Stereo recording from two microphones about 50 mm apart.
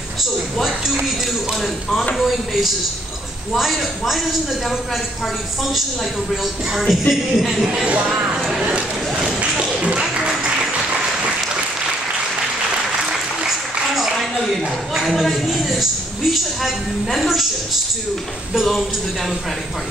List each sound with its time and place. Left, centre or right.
1.6 s speech: centre
6.9 s speech: centre
7.6 s speech: right
8.4 s a sound: centre
9.4 s a sound: right
10.1 s music: centre
15.0 s a man's voice: centre